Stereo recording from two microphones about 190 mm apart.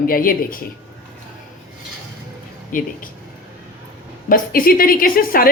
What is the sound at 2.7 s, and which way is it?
Speech, 45° left (ahead or behind).